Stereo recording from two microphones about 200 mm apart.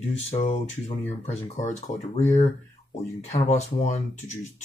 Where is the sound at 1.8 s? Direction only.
30° left (ahead or behind).